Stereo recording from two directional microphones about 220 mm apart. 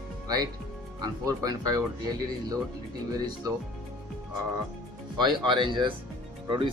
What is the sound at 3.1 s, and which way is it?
Speech, 15° right (ahead or behind).